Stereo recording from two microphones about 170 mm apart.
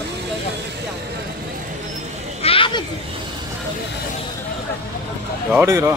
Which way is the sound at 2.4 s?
30° left (ahead or behind).